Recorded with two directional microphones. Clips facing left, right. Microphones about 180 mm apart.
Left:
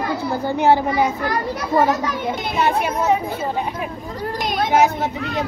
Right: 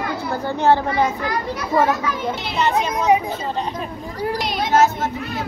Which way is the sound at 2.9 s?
15° right (ahead or behind).